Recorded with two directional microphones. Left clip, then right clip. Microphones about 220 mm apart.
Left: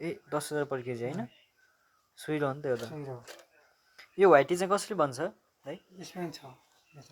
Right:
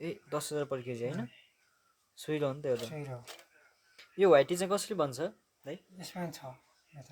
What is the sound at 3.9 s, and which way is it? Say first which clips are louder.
Speech: left 3 dB; centre (ahead or behind).